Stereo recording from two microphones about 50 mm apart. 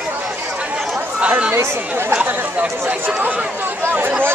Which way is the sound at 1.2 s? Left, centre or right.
Right.